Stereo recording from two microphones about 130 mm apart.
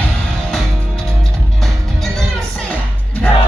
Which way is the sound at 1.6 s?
Centre (ahead or behind).